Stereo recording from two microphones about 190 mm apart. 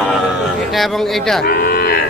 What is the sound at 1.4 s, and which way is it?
Moo, 55° left (ahead or behind).